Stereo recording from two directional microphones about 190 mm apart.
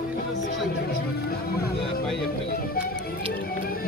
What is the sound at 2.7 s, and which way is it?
Music, 55° left (ahead or behind).